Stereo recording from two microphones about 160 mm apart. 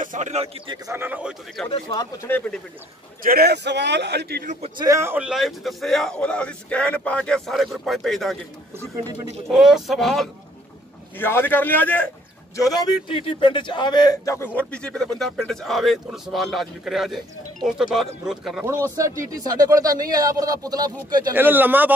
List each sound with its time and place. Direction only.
0.0 s a man's voice: 50° right (ahead or behind)
0.9 s speech: 10° right (ahead or behind)
1.7 s a man's voice: 25° left (ahead or behind)
2.2 s a man's voice: 10° left (ahead or behind)
3.3 s a man's voice: 80° right
4.5 s a man's voice: 45° right (ahead or behind)
4.7 s a man's voice: 20° right (ahead or behind); by 8.4 s centre (ahead or behind)
9.5 s a man's voice: 5° right (ahead or behind)
11.1 s a man's voice: 15° left (ahead or behind)
12.5 s a man's voice: 25° left (ahead or behind); by 18.7 s centre (ahead or behind)
18.7 s speech: 20° right (ahead or behind)
21.3 s speech: 10° right (ahead or behind)